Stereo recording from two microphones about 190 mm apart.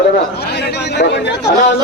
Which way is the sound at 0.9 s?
65° left (ahead or behind).